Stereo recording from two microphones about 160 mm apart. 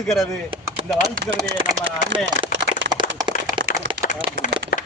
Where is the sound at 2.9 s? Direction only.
30° right (ahead or behind).